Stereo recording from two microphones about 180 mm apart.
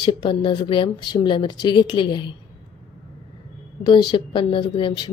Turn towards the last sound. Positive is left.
turn(degrees=25)  # may be behind; listen again after turning